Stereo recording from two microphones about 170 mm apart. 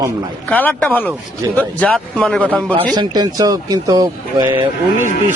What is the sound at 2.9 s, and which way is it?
Speech, 25° right (ahead or behind).